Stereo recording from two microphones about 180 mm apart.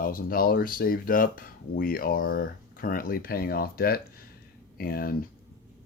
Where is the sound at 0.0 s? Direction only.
55° left (ahead or behind).